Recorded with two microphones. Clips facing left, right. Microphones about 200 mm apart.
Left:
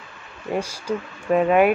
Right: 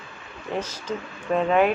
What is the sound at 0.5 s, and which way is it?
Speech, 10° left (ahead or behind).